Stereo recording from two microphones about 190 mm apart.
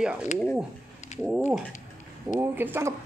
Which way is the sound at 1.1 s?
35° left (ahead or behind).